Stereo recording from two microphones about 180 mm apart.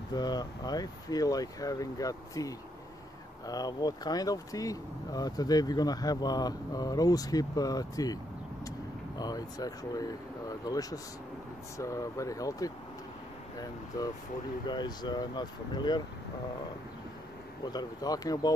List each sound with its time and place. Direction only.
0.1 s speech: 20° left (ahead or behind)
17.6 s speech: 20° left (ahead or behind)